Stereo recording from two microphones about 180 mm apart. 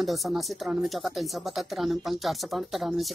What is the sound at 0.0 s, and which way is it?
Speech, centre (ahead or behind).